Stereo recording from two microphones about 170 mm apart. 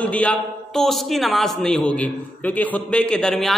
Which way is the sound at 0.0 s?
10° left (ahead or behind).